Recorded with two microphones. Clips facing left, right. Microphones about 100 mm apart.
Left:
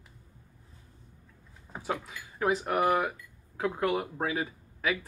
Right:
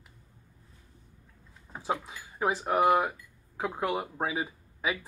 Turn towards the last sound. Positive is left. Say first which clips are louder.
# left 1 dB
turn(degrees=-15)  # may be behind; listen again after turning